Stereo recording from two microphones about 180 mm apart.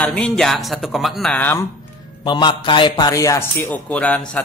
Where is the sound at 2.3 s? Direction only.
25° left (ahead or behind); by 4.4 s 5° left (ahead or behind).